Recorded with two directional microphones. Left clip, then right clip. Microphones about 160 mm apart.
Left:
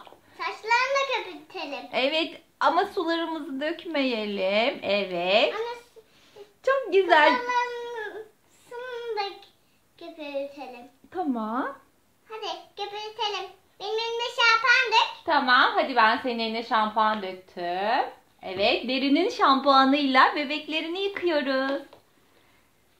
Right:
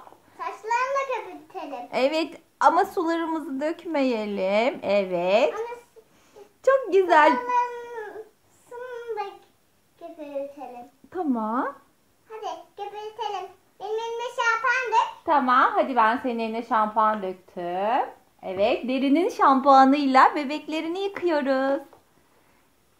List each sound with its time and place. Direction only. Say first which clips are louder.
0.4 s a sound: left 1 dB; 10° right (ahead or behind)
1.9 s a woman's voice: right 2 dB; 60° right (ahead or behind)
6.6 s a woman's voice: right 3 dB; 65° right (ahead or behind)
11.1 s a sound: right 2 dB; 45° right (ahead or behind)
12.3 s child singing: even; 10° right (ahead or behind)
15.2 s a woman's voice: right 2 dB; 65° right (ahead or behind)